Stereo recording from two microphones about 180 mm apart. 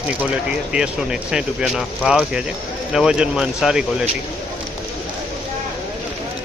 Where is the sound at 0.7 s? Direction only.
5° right (ahead or behind).